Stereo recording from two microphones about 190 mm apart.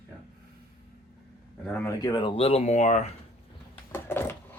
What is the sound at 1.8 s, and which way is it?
Speech, 20° left (ahead or behind).